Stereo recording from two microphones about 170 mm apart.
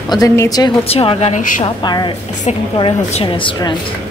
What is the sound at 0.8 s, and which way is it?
Speech, 35° left (ahead or behind).